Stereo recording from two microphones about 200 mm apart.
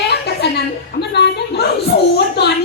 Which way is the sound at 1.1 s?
55° left (ahead or behind).